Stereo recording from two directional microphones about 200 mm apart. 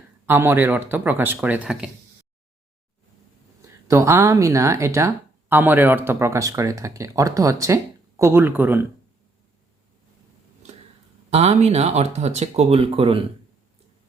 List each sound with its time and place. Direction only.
0.3 s speech: 10° right (ahead or behind)
3.8 s speech: 15° right (ahead or behind)
11.3 s speech: 30° right (ahead or behind)